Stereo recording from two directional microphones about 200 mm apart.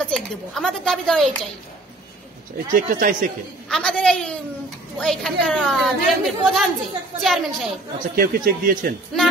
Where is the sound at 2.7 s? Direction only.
45° right (ahead or behind).